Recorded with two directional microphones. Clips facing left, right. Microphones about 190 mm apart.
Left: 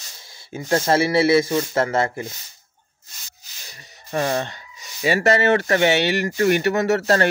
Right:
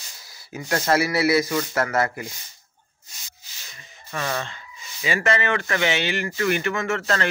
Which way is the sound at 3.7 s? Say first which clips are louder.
Left 7 dB; 40° left (ahead or behind).